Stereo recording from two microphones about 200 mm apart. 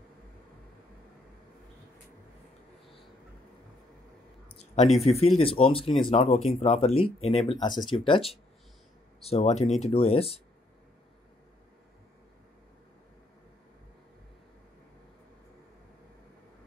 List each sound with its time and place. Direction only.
5.0 s speech: 30° left (ahead or behind)